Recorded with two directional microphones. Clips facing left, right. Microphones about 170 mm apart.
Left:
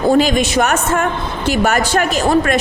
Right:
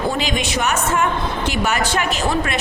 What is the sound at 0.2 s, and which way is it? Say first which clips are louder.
A woman's voice: left 8 dB; 40° left (ahead or behind).